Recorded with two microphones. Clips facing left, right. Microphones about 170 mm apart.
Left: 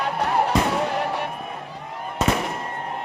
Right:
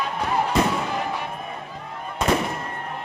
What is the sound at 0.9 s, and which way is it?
Fireworks, 65° left (ahead or behind).